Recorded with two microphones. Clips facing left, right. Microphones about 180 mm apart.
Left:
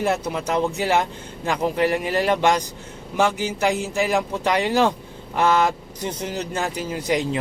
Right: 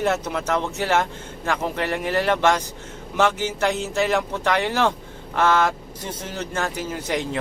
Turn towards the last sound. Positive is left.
turn(degrees=10)  # may be behind; listen again after turning